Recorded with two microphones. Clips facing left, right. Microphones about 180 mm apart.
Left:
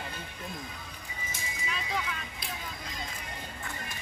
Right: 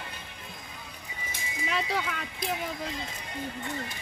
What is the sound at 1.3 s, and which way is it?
Clip-clop, 70° right (ahead or behind).